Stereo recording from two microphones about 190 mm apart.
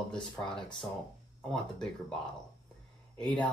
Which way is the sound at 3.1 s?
5° left (ahead or behind).